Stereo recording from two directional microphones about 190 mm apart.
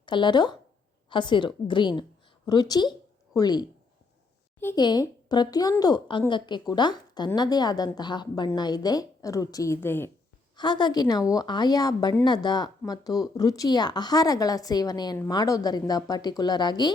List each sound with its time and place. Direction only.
0.0 s a woman's voice: 25° left (ahead or behind)
10.6 s a woman's voice: 25° left (ahead or behind)